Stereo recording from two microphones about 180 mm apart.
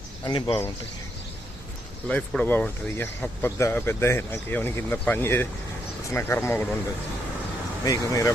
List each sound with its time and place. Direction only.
0.3 s speech: 25° left (ahead or behind)
2.0 s speech: 5° left (ahead or behind)
7.9 s speech: 20° left (ahead or behind)